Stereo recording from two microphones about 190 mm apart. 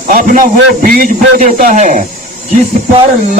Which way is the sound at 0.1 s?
45° right (ahead or behind).